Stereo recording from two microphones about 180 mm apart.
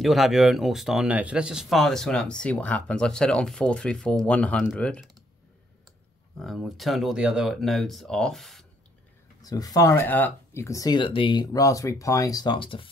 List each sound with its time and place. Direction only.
0.0 s speech: centre (ahead or behind)
6.3 s speech: centre (ahead or behind)
9.4 s speech: 20° left (ahead or behind)